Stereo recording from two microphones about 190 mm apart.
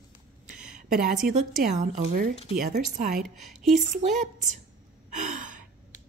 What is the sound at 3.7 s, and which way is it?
Speech, 40° right (ahead or behind).